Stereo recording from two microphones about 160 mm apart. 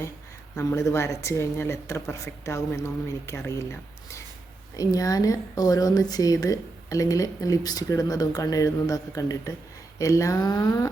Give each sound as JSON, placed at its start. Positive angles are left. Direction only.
{"t": 0.5, "sound": "speech", "side_deg": 15}